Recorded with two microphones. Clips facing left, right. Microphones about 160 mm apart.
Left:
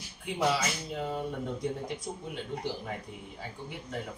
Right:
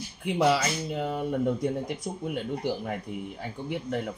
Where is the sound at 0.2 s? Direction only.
65° right (ahead or behind).